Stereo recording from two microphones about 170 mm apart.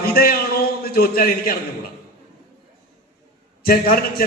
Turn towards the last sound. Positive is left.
turn(degrees=60)  # may be behind; listen again after turning